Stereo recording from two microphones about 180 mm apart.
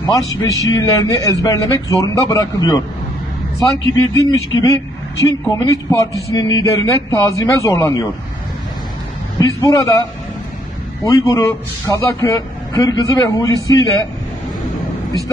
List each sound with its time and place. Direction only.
0.0 s a man's voice: 20° left (ahead or behind)
9.4 s a man's voice: 20° left (ahead or behind)
11.2 s a man's voice: 15° left (ahead or behind)